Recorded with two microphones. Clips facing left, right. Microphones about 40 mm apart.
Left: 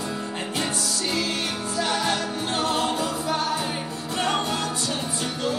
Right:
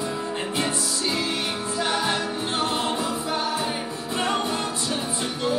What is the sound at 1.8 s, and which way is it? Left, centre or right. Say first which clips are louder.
Music: even; right.